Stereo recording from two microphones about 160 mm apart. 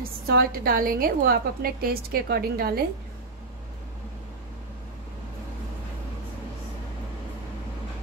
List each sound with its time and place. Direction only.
0.0 s a woman's voice: 70° right (ahead or behind)